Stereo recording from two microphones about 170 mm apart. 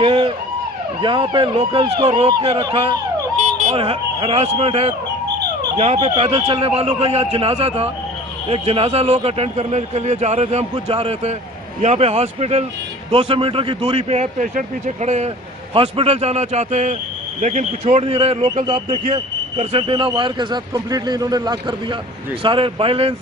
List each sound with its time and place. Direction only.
0.0 s a sound: 30° right (ahead or behind)
1.0 s speech: 30° right (ahead or behind)
19.0 s speech: 40° right (ahead or behind)